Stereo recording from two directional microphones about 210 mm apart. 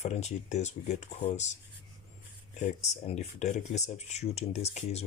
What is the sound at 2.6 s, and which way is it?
Speech, 30° left (ahead or behind).